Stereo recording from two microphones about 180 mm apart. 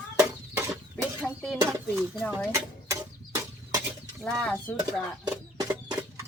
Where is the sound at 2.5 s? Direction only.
15° right (ahead or behind).